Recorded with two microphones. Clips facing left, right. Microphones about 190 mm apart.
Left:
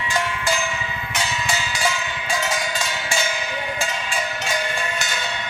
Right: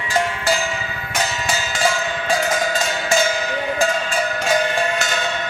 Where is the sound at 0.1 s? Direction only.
40° right (ahead or behind).